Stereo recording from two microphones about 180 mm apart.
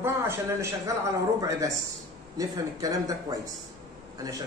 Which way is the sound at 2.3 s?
20° right (ahead or behind).